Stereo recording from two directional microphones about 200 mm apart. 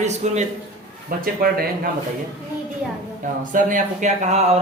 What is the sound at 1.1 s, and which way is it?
Speech, 45° right (ahead or behind).